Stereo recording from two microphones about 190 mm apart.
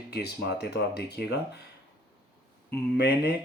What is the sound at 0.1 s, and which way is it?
Speech, 60° left (ahead or behind).